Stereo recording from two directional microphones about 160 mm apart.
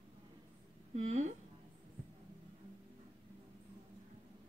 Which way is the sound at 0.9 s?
50° right (ahead or behind).